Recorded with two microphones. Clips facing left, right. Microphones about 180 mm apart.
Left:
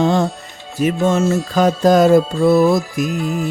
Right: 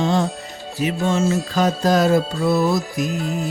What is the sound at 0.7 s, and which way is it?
Music, 50° left (ahead or behind).